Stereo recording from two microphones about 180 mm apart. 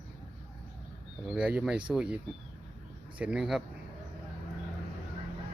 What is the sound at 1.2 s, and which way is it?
Speech, 5° right (ahead or behind).